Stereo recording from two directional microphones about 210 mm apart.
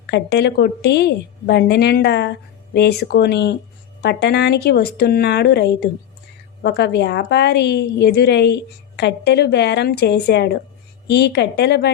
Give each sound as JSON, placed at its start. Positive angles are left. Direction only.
{"t": 0.1, "sound": "a woman's voice", "side_deg": 55}